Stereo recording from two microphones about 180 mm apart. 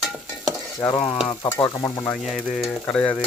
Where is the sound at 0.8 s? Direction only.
15° left (ahead or behind).